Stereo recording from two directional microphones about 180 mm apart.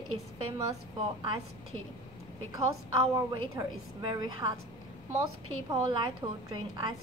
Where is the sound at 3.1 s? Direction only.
20° right (ahead or behind).